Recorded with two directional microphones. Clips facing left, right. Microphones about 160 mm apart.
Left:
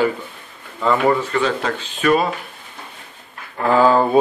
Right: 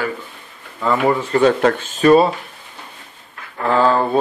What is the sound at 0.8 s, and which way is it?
Speech, 5° right (ahead or behind).